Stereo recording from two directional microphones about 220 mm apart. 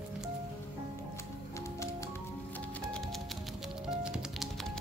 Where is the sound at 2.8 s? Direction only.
5° left (ahead or behind).